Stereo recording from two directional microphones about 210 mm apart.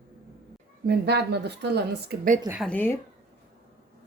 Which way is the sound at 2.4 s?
5° right (ahead or behind).